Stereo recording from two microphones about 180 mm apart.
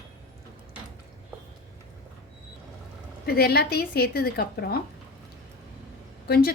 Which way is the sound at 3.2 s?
60° left (ahead or behind).